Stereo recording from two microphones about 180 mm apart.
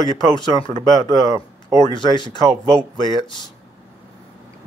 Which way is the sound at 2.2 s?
20° right (ahead or behind).